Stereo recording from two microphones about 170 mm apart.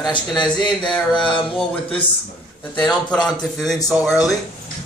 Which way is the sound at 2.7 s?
5° left (ahead or behind).